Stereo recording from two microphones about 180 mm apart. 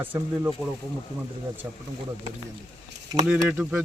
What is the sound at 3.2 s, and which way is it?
Speech, 5° right (ahead or behind).